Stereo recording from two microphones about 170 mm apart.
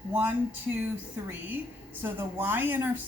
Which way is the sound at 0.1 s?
10° right (ahead or behind).